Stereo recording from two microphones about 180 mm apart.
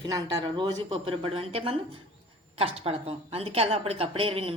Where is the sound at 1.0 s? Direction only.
30° right (ahead or behind).